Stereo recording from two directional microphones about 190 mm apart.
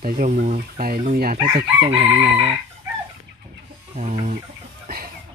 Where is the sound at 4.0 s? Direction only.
40° right (ahead or behind).